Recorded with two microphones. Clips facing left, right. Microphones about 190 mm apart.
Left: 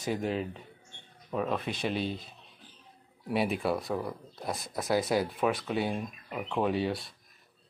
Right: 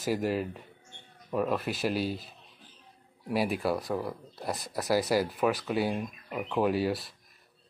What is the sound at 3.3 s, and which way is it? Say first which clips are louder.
Speech: even; centre (ahead or behind).